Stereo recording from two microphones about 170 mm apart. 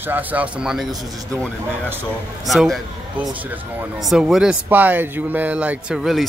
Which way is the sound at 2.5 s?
Centre (ahead or behind).